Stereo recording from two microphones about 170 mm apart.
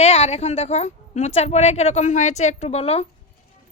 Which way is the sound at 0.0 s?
40° left (ahead or behind).